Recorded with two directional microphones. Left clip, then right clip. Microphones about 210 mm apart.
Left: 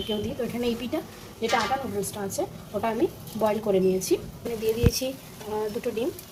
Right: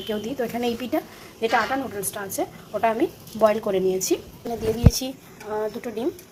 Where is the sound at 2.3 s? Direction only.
25° right (ahead or behind).